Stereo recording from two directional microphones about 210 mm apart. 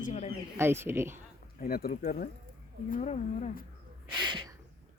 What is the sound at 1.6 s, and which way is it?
Speech, 45° left (ahead or behind).